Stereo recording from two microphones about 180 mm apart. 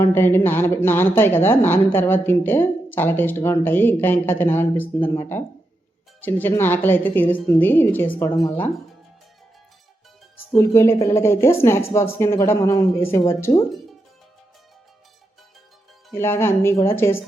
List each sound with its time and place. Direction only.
0.0 s a woman's voice: 10° left (ahead or behind)
10.6 s a woman's voice: 15° left (ahead or behind)
16.1 s a woman's voice: 15° left (ahead or behind)